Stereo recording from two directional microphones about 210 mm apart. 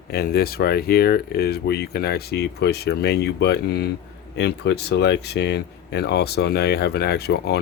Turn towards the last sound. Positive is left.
turn(degrees=50)  # may be behind; listen again after turning